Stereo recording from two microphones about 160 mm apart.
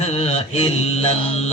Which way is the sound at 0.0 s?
45° left (ahead or behind).